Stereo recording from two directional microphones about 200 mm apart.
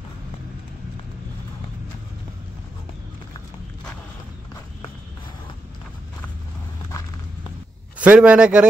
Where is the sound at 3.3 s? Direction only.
15° left (ahead or behind).